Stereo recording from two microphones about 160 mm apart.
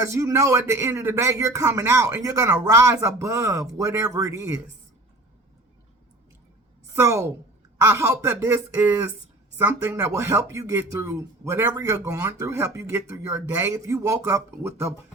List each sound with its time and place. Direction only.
0.0 s speech: 20° right (ahead or behind)
6.9 s speech: 20° right (ahead or behind)